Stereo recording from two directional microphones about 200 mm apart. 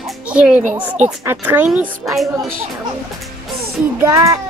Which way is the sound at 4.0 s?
15° right (ahead or behind).